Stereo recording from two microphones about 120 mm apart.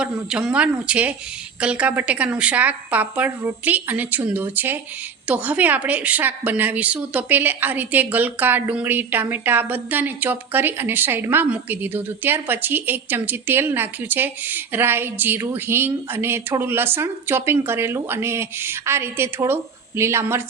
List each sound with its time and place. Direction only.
0.0 s a woman's voice: 5° right (ahead or behind)